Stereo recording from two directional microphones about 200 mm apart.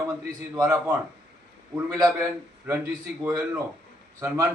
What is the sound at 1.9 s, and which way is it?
Speech, 10° right (ahead or behind).